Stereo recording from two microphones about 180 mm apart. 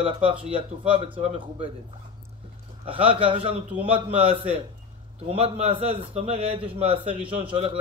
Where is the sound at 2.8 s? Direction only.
30° right (ahead or behind).